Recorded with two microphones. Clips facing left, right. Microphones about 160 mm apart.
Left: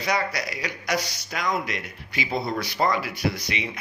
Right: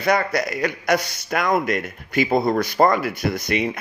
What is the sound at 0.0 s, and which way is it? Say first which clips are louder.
A man's voice: right 6 dB; 50° right (ahead or behind).